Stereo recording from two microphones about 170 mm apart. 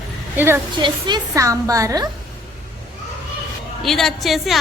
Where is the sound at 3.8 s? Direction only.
Centre (ahead or behind).